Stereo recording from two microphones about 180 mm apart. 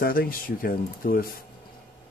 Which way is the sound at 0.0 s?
55° left (ahead or behind).